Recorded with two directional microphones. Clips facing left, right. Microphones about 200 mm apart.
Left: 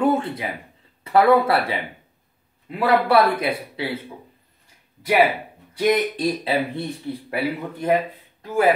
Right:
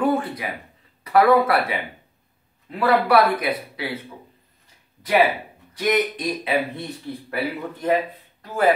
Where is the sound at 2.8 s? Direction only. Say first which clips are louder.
Even; 25° left (ahead or behind).